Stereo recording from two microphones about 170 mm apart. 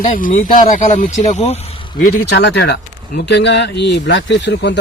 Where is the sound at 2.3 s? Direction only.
80° left.